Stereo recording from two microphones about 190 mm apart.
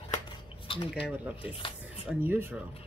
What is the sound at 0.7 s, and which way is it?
Speech, 30° left (ahead or behind).